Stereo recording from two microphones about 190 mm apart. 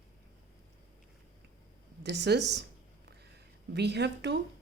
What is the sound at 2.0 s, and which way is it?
Speech, 65° right (ahead or behind).